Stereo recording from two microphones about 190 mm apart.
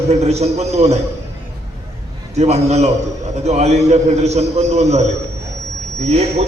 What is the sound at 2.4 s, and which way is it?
A man's voice, 35° right (ahead or behind).